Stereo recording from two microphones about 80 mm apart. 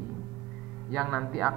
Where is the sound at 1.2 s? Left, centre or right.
Centre.